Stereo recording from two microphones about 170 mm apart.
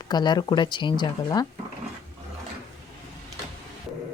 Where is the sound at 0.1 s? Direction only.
25° left (ahead or behind).